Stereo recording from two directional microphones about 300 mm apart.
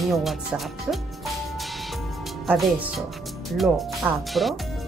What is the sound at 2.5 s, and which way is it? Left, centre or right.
Speech, centre.